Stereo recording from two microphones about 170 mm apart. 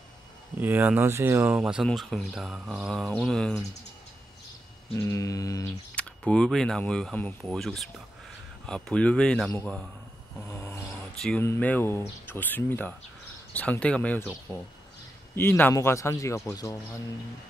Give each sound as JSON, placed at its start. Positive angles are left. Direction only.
{"t": 0.6, "sound": "speech", "side_deg": -10}
{"t": 1.6, "sound": "speech", "side_deg": 0}
{"t": 4.9, "sound": "mantra", "side_deg": 15}
{"t": 5.9, "sound": "speech", "side_deg": 5}
{"t": 10.5, "sound": "snoring", "side_deg": 10}
{"t": 11.1, "sound": "speech", "side_deg": 5}